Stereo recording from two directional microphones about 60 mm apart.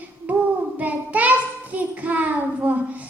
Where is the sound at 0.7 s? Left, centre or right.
Right.